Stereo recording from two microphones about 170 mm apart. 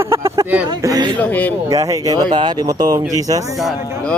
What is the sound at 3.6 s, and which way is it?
Speech, centre (ahead or behind).